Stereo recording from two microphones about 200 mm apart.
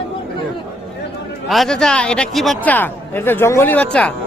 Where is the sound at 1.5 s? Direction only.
Centre (ahead or behind).